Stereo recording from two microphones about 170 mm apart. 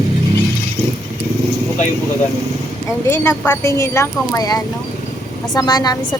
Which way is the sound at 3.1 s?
10° left (ahead or behind).